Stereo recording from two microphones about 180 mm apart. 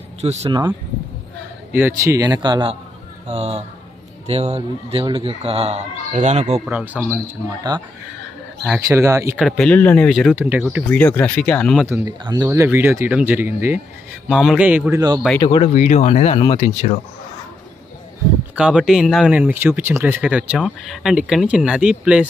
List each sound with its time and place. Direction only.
0.2 s speech: 35° right (ahead or behind)
0.5 s a man's voice: 25° right (ahead or behind)
1.7 s a man's voice: 10° right (ahead or behind); by 6.6 s 40° right (ahead or behind)
6.6 s speech: 10° right (ahead or behind)
8.8 s speech: 15° right (ahead or behind)
9.4 s speech: 5° left (ahead or behind)
10.3 s speech: 10° right (ahead or behind)
10.9 s speech: 10° left (ahead or behind)
11.8 s speech: 15° right (ahead or behind)
15.0 s a man's voice: 20° right (ahead or behind)
15.4 s speech: 30° left (ahead or behind)
15.7 s speech: 40° left (ahead or behind)
18.6 s speech: 5° right (ahead or behind)